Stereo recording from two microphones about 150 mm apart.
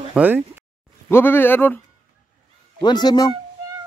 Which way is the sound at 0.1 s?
10° right (ahead or behind).